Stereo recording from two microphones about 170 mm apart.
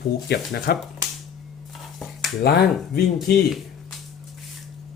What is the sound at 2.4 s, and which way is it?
Speech, 65° left (ahead or behind).